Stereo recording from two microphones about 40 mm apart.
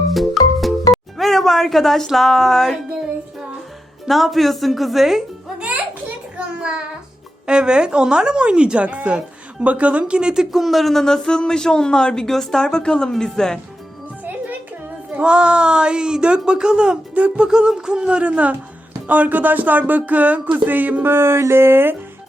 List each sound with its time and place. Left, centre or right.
0.1 s music: centre
1.2 s a woman's voice: centre
4.0 s speech: centre
6.3 s child singing: right
7.4 s speech: right
10.6 s speech: centre
11.0 s speech: centre
12.6 s speech: centre
15.2 s speech: right
17.2 s music: right
17.4 s speech: centre; by 21.0 s right
21.0 s speech: right